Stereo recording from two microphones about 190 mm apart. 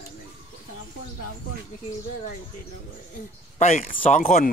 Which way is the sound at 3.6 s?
35° left (ahead or behind).